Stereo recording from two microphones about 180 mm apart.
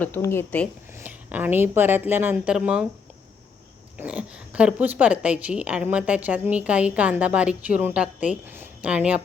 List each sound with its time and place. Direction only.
0.0 s a woman's voice: 15° left (ahead or behind)
0.9 s a woman's voice: 10° right (ahead or behind)
3.9 s a woman's voice: 5° right (ahead or behind)